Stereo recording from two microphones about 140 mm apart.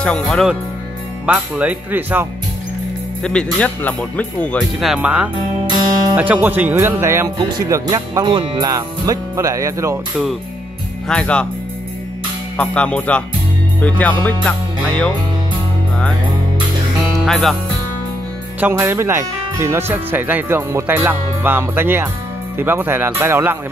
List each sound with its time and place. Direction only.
0.0 s speech: 5° left (ahead or behind)
1.2 s speech: 10° right (ahead or behind)
3.3 s speech: 10° left (ahead or behind); by 7.2 s 20° right (ahead or behind)
7.3 s speech: 30° right (ahead or behind)
11.1 s speech: 5° left (ahead or behind)
12.5 s speech: 10° left (ahead or behind)
17.2 s speech: centre (ahead or behind)
18.6 s speech: 15° right (ahead or behind)